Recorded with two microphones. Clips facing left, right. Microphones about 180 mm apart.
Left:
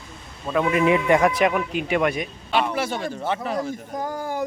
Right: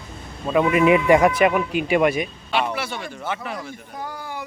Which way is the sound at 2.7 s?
45° left (ahead or behind).